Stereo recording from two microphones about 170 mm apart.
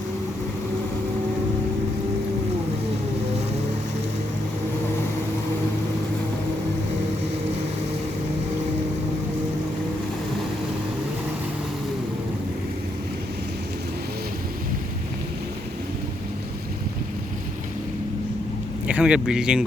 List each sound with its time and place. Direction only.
18.9 s speech: 5° right (ahead or behind)